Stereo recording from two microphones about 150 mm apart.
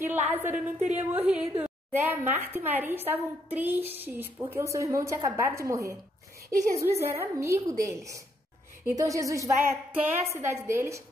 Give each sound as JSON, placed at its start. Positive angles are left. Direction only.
{"t": 0.0, "sound": "a woman's voice", "side_deg": -15}